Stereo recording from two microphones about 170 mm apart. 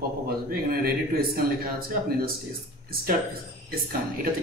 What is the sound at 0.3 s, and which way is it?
Speech, 60° right (ahead or behind).